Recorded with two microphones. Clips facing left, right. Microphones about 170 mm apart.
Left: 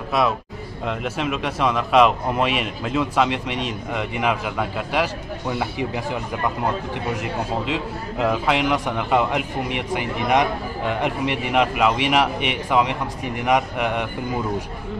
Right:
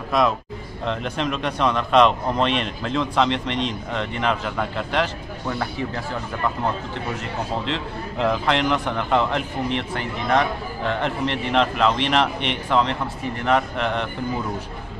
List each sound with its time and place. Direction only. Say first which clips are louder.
0.1 s a man's voice: right 1 dB; 5° left (ahead or behind)